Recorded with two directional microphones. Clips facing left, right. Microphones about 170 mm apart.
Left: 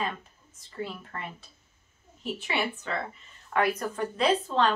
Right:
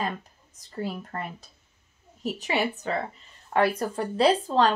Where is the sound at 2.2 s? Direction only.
40° right (ahead or behind).